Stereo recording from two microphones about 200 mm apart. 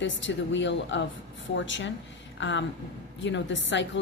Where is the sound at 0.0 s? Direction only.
65° left (ahead or behind).